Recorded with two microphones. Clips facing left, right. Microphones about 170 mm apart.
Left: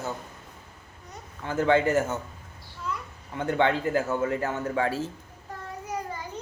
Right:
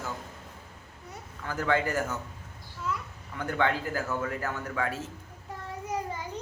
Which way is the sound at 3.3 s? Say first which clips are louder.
Left 4 dB; 25° left (ahead or behind).